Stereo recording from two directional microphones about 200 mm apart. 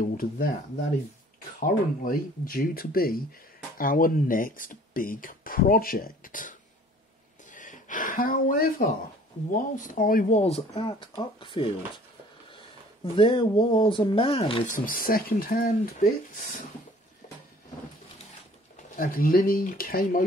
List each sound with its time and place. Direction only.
0.0 s speech: 45° left (ahead or behind)
1.6 s speech: 45° left (ahead or behind)
7.5 s speech: 40° left (ahead or behind); by 11.7 s 25° left (ahead or behind)
13.0 s speech: 25° left (ahead or behind)
14.7 s speech: 45° left (ahead or behind)
18.9 s speech: 45° left (ahead or behind)